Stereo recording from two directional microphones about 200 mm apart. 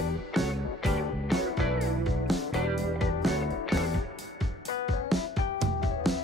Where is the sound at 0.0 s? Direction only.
Centre (ahead or behind).